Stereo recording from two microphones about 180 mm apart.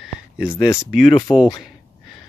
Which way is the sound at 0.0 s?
5° right (ahead or behind).